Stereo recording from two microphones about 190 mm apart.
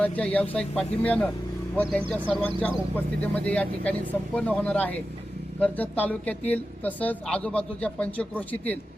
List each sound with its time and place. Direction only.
0.0 s speech: 5° left (ahead or behind)